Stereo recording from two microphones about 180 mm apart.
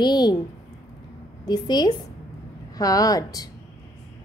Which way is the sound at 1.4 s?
25° left (ahead or behind).